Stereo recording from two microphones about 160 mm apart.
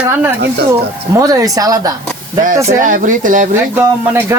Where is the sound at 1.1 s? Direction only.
20° right (ahead or behind).